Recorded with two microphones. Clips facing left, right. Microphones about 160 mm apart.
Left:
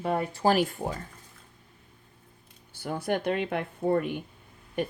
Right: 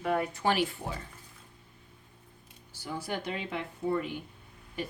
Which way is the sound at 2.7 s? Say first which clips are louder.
Left 6 dB; 55° left (ahead or behind).